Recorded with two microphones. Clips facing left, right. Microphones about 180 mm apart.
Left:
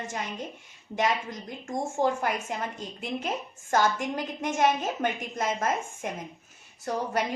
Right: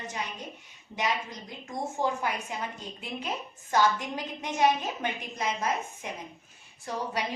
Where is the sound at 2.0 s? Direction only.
45° left (ahead or behind).